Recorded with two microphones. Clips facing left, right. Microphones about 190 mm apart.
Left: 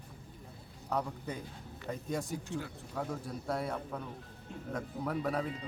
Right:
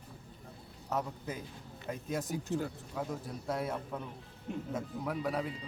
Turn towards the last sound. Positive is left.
turn(degrees=0)  # may be behind; listen again after turning